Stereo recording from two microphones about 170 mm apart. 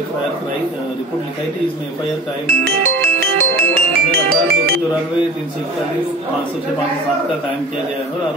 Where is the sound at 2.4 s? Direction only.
60° right (ahead or behind).